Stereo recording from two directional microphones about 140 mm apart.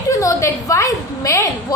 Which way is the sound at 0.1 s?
25° left (ahead or behind).